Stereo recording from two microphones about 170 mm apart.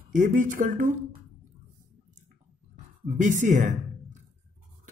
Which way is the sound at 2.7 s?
50° right (ahead or behind).